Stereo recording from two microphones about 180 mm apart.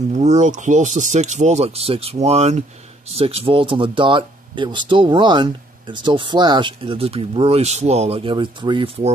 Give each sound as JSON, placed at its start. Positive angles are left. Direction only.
{"t": 0.1, "sound": "speech", "side_deg": -40}